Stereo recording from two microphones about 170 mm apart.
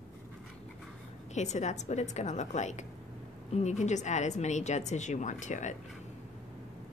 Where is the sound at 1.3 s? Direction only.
45° left (ahead or behind).